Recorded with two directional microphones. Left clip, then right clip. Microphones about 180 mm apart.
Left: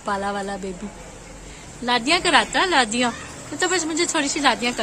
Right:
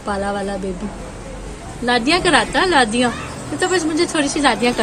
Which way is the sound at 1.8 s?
20° left (ahead or behind).